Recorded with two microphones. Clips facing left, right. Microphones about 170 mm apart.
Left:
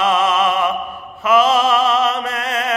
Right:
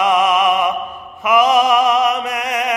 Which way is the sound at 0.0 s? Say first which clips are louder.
Right 2 dB; 15° right (ahead or behind).